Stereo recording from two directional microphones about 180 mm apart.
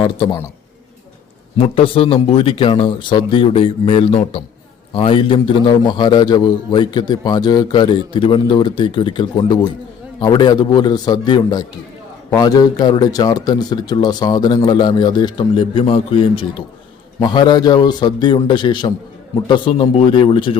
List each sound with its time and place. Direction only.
0.0 s a man's voice: 25° left (ahead or behind)
1.5 s a man's voice: 30° left (ahead or behind)